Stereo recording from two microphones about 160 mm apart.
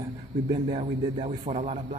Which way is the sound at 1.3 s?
40° right (ahead or behind).